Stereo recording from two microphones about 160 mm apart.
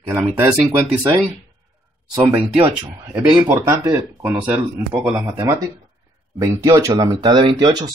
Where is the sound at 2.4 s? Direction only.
30° right (ahead or behind).